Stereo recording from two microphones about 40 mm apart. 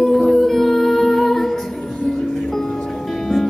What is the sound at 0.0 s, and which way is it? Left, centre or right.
Music, centre.